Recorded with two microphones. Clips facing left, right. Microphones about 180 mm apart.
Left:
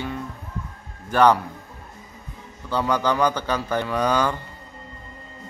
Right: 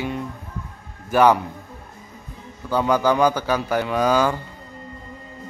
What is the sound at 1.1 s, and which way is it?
Speech, 10° right (ahead or behind).